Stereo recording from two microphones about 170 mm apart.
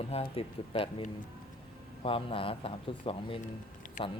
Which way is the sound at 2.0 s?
30° left (ahead or behind).